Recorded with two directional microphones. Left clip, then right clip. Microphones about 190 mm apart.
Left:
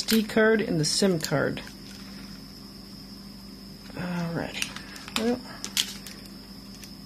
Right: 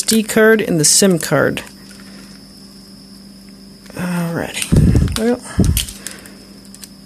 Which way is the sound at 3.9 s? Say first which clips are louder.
Right 10 dB; 35° right (ahead or behind).